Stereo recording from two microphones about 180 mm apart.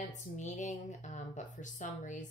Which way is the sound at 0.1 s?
40° left (ahead or behind).